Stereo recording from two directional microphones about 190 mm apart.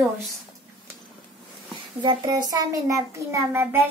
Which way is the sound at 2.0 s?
20° right (ahead or behind).